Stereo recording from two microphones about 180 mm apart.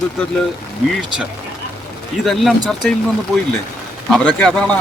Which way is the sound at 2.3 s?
Centre (ahead or behind).